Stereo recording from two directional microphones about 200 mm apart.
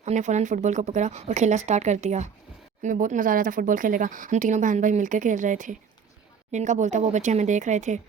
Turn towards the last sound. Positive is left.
turn(degrees=-35)  # may be behind; listen again after turning